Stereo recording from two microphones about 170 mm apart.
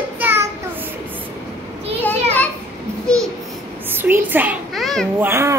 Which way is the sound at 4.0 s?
10° right (ahead or behind).